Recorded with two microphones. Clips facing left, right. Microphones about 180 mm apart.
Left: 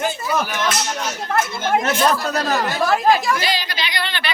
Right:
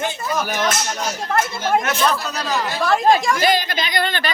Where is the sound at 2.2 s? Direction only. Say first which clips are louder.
Left 3 dB; 50° left (ahead or behind).